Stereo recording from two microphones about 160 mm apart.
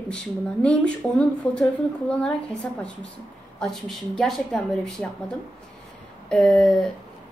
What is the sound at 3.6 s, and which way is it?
A woman's voice, 5° left (ahead or behind).